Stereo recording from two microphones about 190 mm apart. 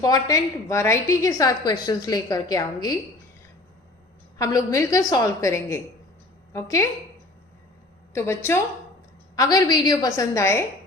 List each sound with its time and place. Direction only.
0.0 s a woman's voice: 20° left (ahead or behind)
4.4 s a woman's voice: 15° left (ahead or behind)
8.1 s a woman's voice: 15° left (ahead or behind)